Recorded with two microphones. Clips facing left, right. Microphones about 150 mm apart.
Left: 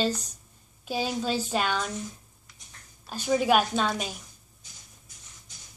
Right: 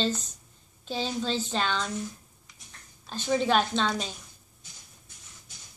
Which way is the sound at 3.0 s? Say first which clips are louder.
Left 2 dB; 10° left (ahead or behind).